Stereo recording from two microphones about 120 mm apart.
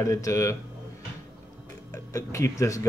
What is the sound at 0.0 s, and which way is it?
Speech, 25° left (ahead or behind).